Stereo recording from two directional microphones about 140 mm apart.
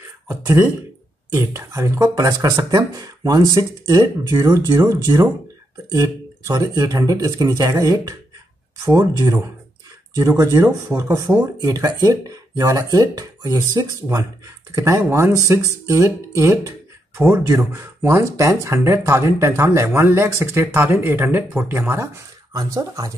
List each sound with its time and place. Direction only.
0.3 s speech: 15° right (ahead or behind)